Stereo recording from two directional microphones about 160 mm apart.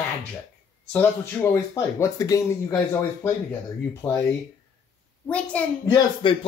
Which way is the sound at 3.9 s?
15° left (ahead or behind).